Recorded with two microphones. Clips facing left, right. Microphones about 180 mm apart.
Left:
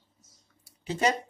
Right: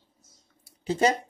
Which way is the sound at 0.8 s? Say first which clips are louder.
Right 3 dB; 35° right (ahead or behind).